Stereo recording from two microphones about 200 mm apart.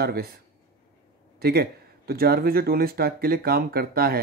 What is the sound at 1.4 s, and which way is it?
Speech, 50° right (ahead or behind).